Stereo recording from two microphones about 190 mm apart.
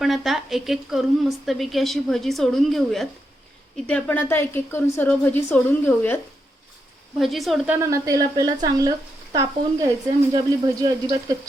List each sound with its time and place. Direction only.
0.0 s a woman's voice: centre (ahead or behind)
7.2 s a woman's voice: centre (ahead or behind)
7.8 s speech: 15° right (ahead or behind)